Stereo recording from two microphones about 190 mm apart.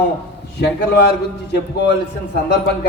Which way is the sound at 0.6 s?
65° left (ahead or behind).